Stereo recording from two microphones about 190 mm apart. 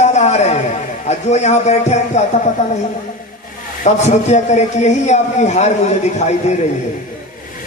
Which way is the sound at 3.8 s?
35° left (ahead or behind).